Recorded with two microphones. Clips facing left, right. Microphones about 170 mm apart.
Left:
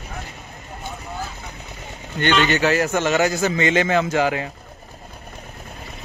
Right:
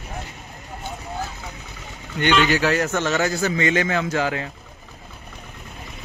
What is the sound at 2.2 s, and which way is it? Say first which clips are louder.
Speech: even; 10° right (ahead or behind).